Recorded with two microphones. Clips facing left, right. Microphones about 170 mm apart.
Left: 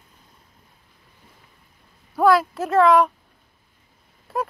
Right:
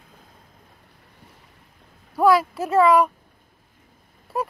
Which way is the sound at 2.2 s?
5° right (ahead or behind).